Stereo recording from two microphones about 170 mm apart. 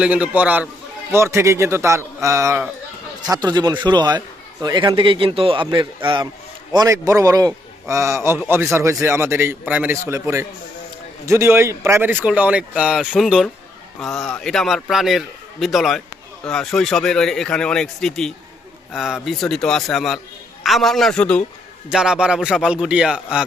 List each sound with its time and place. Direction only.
0.0 s a man's voice: 5° right (ahead or behind)
21.8 s speech: 5° right (ahead or behind)